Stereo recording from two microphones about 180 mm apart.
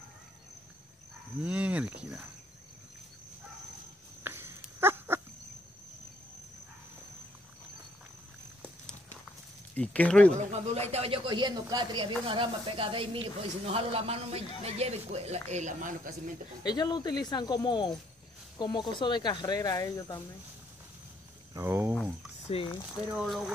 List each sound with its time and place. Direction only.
1.4 s speech: 5° right (ahead or behind)
4.2 s a sound: 15° right (ahead or behind)
9.8 s speech: 5° left (ahead or behind)
10.5 s speech: 35° right (ahead or behind)
16.6 s speech: 20° left (ahead or behind)
21.5 s speech: 15° right (ahead or behind)
22.5 s speech: 30° left (ahead or behind)
22.9 s speech: centre (ahead or behind)